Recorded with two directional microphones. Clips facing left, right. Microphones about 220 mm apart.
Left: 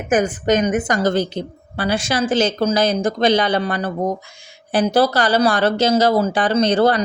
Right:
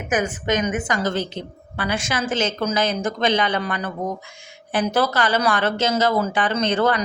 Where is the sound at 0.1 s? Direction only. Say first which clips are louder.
Left 5 dB; 40° left (ahead or behind).